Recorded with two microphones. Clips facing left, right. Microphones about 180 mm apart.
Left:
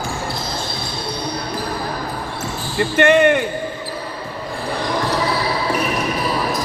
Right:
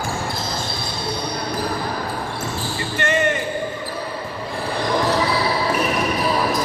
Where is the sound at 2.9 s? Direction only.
60° left (ahead or behind).